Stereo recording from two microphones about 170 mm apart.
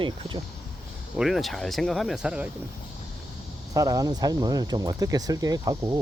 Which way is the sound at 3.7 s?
20° right (ahead or behind).